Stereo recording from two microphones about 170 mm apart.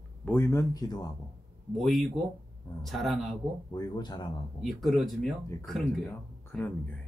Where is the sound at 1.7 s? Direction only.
Centre (ahead or behind).